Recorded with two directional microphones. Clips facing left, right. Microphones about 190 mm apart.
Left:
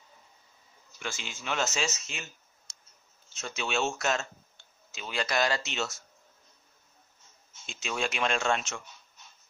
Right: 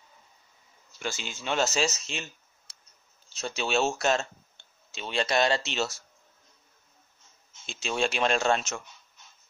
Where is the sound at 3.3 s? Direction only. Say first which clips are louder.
Right 4 dB; 35° right (ahead or behind).